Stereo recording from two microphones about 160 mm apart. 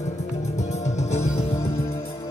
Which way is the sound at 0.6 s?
45° left (ahead or behind).